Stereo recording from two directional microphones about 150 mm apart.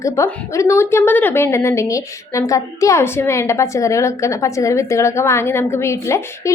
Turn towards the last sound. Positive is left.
turn(degrees=20)  # may be behind; listen again after turning